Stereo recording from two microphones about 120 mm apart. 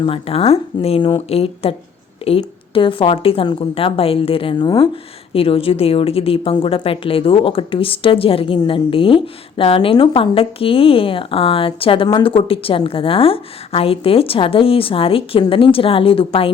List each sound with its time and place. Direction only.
0.0 s a woman's voice: 50° left (ahead or behind)
5.3 s a woman's voice: 50° left (ahead or behind)